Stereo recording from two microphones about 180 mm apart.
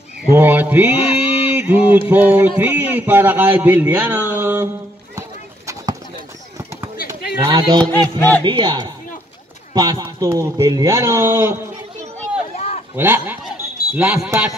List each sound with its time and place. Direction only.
0.3 s a man's voice: 10° right (ahead or behind)
0.9 s a sound: 30° left (ahead or behind)
1.6 s mantra: 10° right (ahead or behind)
2.0 s a man's voice: 10° right (ahead or behind)
7.3 s speech: 20° right (ahead or behind)
7.8 s music: 10° left (ahead or behind)
8.5 s a man's voice: 25° right (ahead or behind)
12.5 s a sound: 35° left (ahead or behind)
12.9 s a sound: 10° right (ahead or behind)